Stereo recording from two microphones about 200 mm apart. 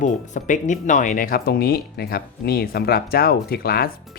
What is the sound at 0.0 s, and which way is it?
Speech, 40° left (ahead or behind).